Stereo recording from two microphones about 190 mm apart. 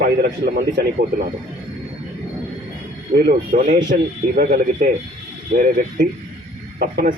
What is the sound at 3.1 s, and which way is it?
Speech, 55° right (ahead or behind).